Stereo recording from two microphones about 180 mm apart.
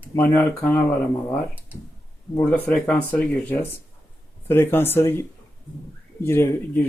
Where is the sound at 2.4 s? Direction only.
10° left (ahead or behind).